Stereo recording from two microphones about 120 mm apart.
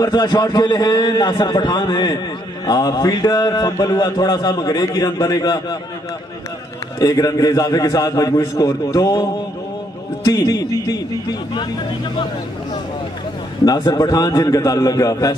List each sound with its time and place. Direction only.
0.0 s a man's voice: 35° left (ahead or behind)
7.0 s a man's voice: 30° left (ahead or behind)
13.7 s a man's voice: 30° left (ahead or behind)